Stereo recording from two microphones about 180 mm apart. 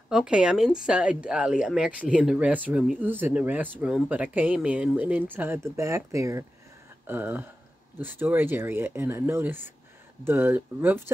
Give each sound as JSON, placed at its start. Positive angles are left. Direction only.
{"t": 0.1, "sound": "speech", "side_deg": -5}